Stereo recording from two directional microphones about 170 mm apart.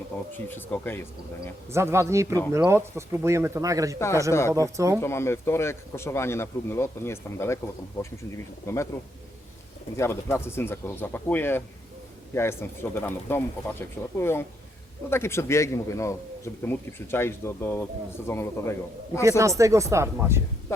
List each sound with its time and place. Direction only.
0.3 s a man's voice: 10° left (ahead or behind)
1.7 s speech: 15° right (ahead or behind)
3.9 s a man's voice: 15° left (ahead or behind)
4.5 s speech: 20° right (ahead or behind)
4.9 s a man's voice: 15° left (ahead or behind)
10.0 s a man's voice: 15° left (ahead or behind)
19.4 s speech: 20° right (ahead or behind)
20.7 s music: 15° left (ahead or behind)